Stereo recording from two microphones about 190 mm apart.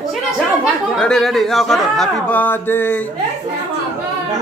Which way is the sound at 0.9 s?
5° left (ahead or behind).